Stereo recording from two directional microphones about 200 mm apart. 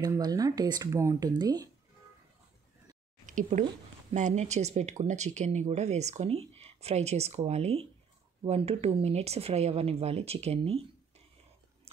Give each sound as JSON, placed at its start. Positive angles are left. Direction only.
{"t": 0.0, "sound": "speech", "side_deg": -20}
{"t": 3.3, "sound": "speech", "side_deg": -40}